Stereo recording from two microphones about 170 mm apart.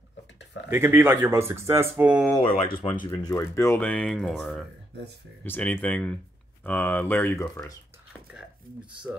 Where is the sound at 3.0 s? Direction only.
15° left (ahead or behind).